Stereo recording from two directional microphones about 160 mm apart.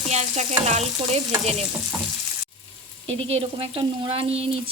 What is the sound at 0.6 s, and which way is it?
Speech, 40° right (ahead or behind).